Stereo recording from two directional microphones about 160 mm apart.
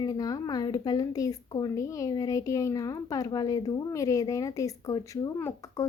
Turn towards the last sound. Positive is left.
turn(degrees=20)  # may be behind; listen again after turning